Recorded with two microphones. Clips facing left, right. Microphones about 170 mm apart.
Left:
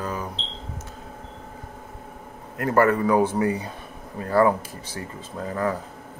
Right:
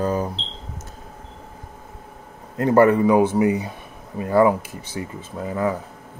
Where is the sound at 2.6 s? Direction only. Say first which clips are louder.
Right 5 dB; 20° right (ahead or behind).